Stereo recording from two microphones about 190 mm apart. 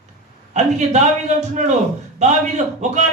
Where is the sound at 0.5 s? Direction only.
40° right (ahead or behind).